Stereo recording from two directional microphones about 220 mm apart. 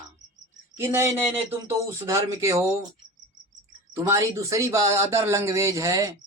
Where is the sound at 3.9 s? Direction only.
15° right (ahead or behind).